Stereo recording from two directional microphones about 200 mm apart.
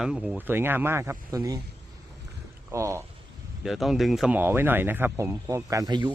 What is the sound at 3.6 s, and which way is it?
Speech, centre (ahead or behind).